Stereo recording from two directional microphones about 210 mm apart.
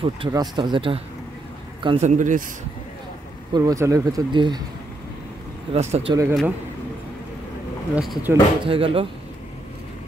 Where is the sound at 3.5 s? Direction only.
15° right (ahead or behind).